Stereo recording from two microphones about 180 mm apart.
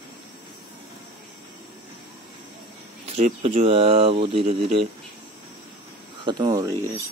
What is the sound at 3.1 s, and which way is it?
Speech, 40° right (ahead or behind).